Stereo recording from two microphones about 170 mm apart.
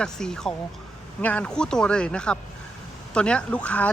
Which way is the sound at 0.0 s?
5° left (ahead or behind).